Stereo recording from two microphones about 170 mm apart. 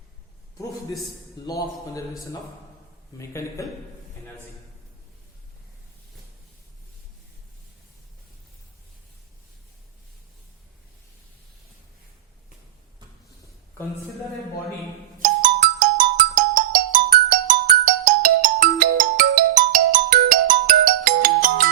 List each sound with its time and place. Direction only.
15.4 s music: 50° right (ahead or behind)